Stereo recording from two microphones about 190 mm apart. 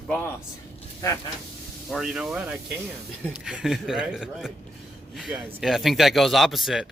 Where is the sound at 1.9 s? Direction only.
5° right (ahead or behind).